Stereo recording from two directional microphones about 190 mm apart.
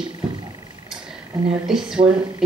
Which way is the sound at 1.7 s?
Centre (ahead or behind).